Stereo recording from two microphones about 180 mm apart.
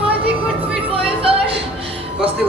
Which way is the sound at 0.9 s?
30° right (ahead or behind).